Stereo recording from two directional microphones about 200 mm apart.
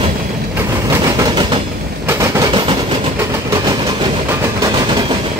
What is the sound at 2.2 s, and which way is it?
Train, 15° right (ahead or behind).